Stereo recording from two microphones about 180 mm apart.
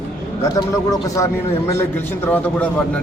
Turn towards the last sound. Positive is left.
turn(degrees=10)  # may be behind; listen again after turning